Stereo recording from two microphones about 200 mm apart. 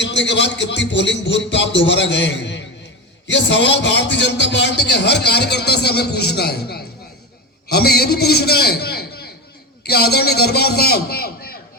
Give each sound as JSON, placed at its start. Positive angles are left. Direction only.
{"t": 0.0, "sound": "a man's voice", "side_deg": 60}